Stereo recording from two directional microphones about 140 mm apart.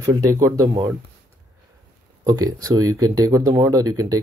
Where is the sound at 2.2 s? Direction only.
25° right (ahead or behind).